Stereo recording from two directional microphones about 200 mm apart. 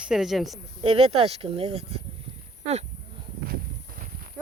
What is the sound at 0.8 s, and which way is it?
Speech, 30° right (ahead or behind).